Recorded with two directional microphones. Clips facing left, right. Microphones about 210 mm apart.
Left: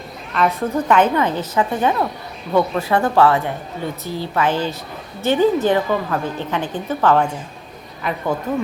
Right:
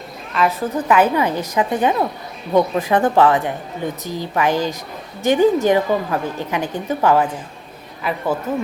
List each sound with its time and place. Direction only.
0.3 s a woman's voice: 5° right (ahead or behind)